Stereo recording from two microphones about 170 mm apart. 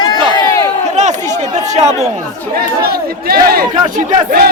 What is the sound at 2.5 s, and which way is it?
Speech, 65° right (ahead or behind).